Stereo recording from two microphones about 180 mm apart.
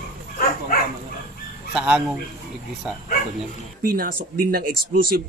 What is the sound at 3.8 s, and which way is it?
Speech, 55° right (ahead or behind).